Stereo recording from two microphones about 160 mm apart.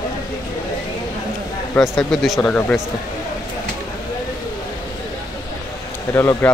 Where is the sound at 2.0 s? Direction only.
Centre (ahead or behind).